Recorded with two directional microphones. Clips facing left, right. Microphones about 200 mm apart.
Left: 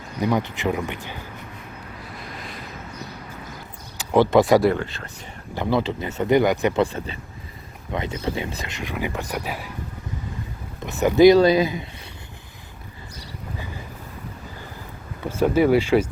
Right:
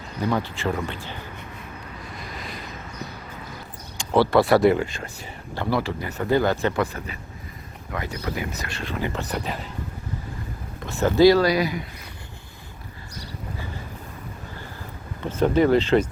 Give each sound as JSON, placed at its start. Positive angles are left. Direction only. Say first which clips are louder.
{"t": 0.2, "sound": "speech", "louder": "left 2 dB", "side_deg": 15}
{"t": 3.9, "sound": "speech", "louder": "left 2 dB", "side_deg": 15}
{"t": 4.6, "sound": "speech", "louder": "right 2 dB", "side_deg": -5}
{"t": 5.5, "sound": "speech", "louder": "left 2 dB", "side_deg": 20}
{"t": 6.7, "sound": "speech", "louder": "left 4 dB", "side_deg": 30}
{"t": 10.8, "sound": "speech", "louder": "left 2 dB", "side_deg": 20}
{"t": 15.2, "sound": "speech", "louder": "left 1 dB", "side_deg": 10}